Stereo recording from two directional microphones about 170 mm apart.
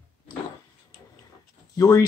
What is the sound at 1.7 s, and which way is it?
Speech, 20° left (ahead or behind).